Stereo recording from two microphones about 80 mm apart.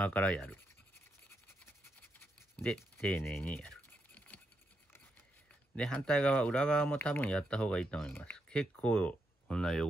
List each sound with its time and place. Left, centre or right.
0.0 s speech: centre
2.5 s speech: centre
3.4 s scratch: centre
5.8 s speech: centre